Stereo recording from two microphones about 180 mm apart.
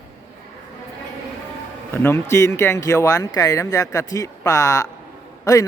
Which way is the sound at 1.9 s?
15° left (ahead or behind).